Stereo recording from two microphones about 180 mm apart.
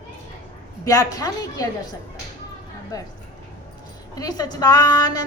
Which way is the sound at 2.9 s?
20° left (ahead or behind).